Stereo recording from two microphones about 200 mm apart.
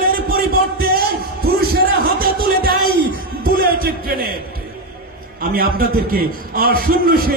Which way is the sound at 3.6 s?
50° right (ahead or behind).